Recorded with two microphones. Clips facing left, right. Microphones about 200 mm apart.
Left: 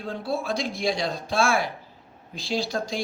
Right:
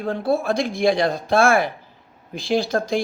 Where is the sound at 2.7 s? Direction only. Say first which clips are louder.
Right 6 dB; 55° right (ahead or behind).